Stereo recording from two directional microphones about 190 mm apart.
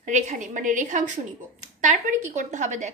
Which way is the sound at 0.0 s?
40° right (ahead or behind).